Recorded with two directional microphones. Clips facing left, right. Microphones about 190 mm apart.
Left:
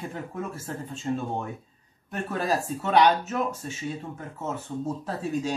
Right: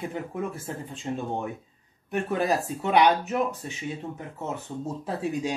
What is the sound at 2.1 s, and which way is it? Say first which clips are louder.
Speech: right 2 dB; 15° right (ahead or behind).